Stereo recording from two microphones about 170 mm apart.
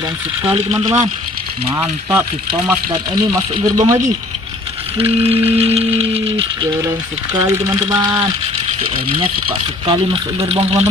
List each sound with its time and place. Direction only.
0.7 s speech: 20° right (ahead or behind)
2.9 s speech: 25° right (ahead or behind)
4.9 s music: 35° right (ahead or behind)
7.3 s speech: 15° right (ahead or behind)